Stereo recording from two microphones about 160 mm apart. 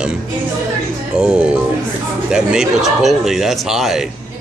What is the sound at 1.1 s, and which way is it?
Speech, 5° right (ahead or behind).